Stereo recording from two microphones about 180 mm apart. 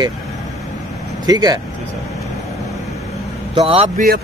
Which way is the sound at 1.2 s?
20° right (ahead or behind).